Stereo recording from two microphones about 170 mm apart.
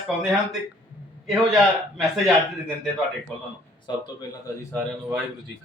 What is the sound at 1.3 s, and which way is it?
Speech, centre (ahead or behind).